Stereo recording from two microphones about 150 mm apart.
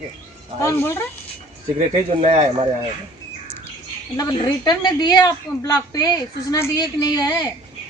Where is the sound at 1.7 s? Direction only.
45° right (ahead or behind).